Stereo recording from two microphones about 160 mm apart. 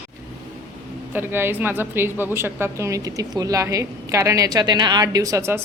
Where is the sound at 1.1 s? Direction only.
15° right (ahead or behind).